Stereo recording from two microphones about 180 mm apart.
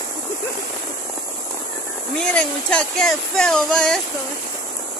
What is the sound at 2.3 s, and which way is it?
Speech, 5° left (ahead or behind).